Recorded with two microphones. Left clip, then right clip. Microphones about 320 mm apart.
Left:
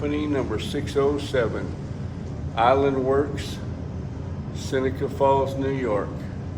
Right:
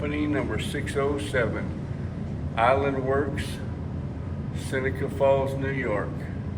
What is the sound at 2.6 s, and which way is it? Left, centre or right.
Speech, centre.